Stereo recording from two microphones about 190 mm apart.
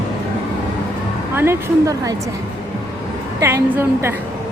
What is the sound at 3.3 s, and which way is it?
Speech, 15° right (ahead or behind).